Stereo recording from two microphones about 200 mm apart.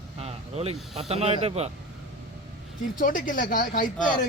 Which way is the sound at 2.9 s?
40° left (ahead or behind).